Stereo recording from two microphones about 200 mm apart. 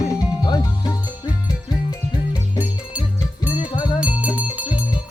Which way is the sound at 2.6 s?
5° right (ahead or behind).